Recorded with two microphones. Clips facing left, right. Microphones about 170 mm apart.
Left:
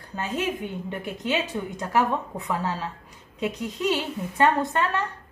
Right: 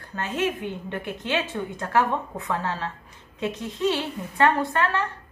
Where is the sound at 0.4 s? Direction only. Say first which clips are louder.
Right 4 dB; 10° left (ahead or behind).